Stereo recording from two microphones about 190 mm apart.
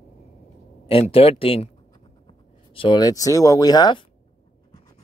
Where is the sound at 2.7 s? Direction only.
25° left (ahead or behind).